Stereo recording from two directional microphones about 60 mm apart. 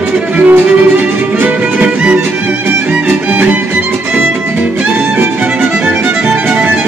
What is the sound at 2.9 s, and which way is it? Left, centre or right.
Music, right.